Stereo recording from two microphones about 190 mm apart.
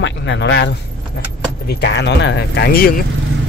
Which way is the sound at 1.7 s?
65° left (ahead or behind).